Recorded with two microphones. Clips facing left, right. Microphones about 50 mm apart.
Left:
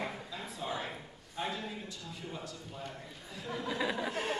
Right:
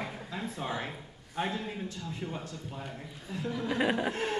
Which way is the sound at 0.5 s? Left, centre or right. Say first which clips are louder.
Left 1 dB; right.